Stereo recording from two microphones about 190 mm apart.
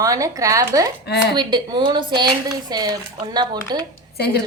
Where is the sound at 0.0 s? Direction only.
15° right (ahead or behind).